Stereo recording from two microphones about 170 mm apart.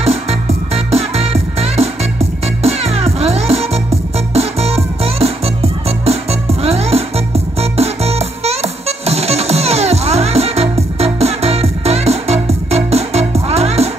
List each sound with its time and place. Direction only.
0.0 s music: 35° right (ahead or behind)